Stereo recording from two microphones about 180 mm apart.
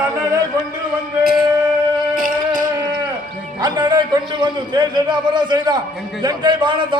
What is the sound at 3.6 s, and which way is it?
A man's voice, 20° right (ahead or behind).